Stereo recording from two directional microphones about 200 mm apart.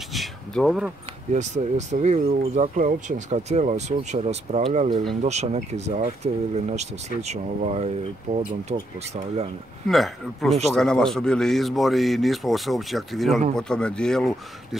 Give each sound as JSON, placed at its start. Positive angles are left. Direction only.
{"t": 0.1, "sound": "a sound", "side_deg": 0}
{"t": 1.3, "sound": "speech", "side_deg": -35}
{"t": 9.8, "sound": "a man's voice", "side_deg": 0}